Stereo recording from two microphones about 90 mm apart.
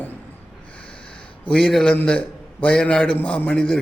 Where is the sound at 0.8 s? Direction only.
15° left (ahead or behind).